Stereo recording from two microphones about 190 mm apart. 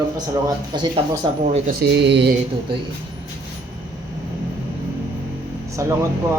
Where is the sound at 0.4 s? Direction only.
20° right (ahead or behind).